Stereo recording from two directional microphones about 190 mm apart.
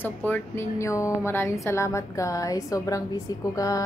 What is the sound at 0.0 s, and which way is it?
A woman's voice, 10° left (ahead or behind).